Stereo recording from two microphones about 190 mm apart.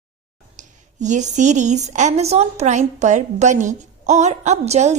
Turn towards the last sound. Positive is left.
turn(degrees=-35)  # may be behind; listen again after turning